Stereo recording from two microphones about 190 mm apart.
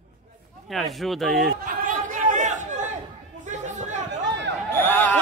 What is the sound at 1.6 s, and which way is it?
Chatter, 45° right (ahead or behind).